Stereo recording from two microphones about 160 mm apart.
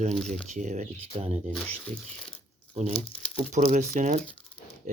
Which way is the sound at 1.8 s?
5° left (ahead or behind).